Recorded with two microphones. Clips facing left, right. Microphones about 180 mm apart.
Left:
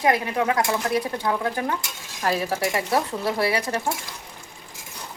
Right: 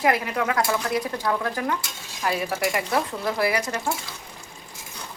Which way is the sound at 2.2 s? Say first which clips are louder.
Left 1 dB; 35° left (ahead or behind).